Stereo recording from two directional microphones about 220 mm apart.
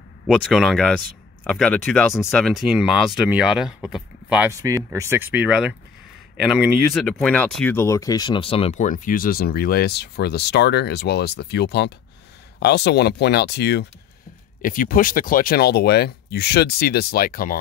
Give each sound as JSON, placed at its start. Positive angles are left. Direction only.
{"t": 0.3, "sound": "speech", "side_deg": 0}
{"t": 14.6, "sound": "speech", "side_deg": 40}